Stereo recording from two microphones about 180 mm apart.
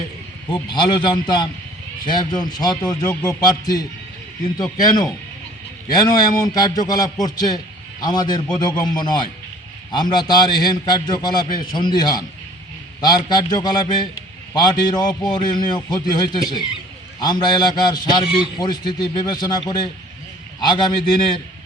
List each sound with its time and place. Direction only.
0.5 s a man's voice: 25° left (ahead or behind)